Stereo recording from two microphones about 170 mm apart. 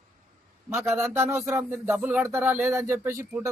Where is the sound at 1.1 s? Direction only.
15° right (ahead or behind).